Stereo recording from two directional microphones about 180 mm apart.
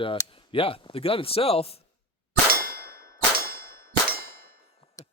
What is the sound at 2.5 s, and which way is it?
Clang, 55° right (ahead or behind).